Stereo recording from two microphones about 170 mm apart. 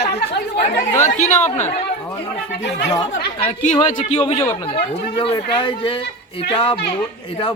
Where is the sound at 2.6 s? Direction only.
90° left.